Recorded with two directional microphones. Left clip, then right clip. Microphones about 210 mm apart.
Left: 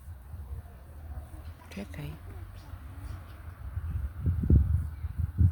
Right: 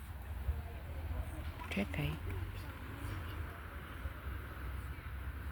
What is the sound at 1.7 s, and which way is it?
Speech, 5° right (ahead or behind).